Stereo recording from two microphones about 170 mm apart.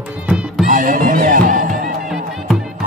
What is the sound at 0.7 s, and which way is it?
Music, 50° right (ahead or behind).